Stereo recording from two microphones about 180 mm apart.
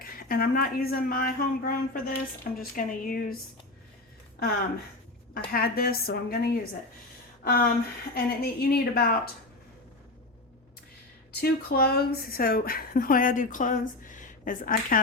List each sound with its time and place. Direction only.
0.0 s speech: 50° left (ahead or behind)
5.5 s a woman's voice: 55° left (ahead or behind)
11.3 s speech: 60° left (ahead or behind)